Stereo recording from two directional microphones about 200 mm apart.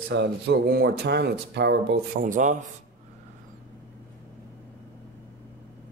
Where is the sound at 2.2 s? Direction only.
40° right (ahead or behind).